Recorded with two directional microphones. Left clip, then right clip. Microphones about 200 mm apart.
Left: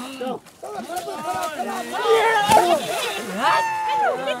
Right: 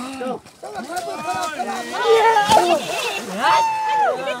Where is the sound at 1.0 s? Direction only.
25° left (ahead or behind).